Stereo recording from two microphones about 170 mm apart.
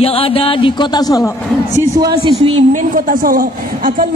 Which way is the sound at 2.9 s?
55° right (ahead or behind).